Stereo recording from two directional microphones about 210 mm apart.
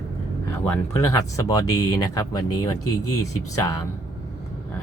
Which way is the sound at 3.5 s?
15° left (ahead or behind).